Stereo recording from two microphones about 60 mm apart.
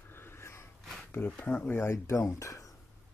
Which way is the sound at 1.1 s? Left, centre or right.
Left.